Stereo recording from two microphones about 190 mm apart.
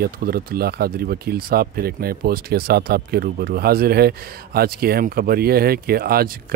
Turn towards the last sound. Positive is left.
turn(degrees=-50)  # may be behind; listen again after turning